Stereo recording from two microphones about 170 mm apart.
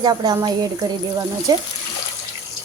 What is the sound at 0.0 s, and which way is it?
Speech, 25° right (ahead or behind).